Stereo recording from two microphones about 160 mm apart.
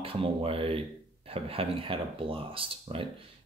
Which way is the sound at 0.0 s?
35° right (ahead or behind).